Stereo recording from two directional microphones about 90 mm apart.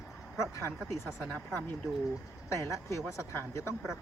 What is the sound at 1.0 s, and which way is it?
Speech, 5° right (ahead or behind).